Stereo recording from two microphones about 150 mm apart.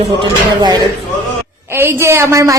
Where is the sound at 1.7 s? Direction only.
15° right (ahead or behind).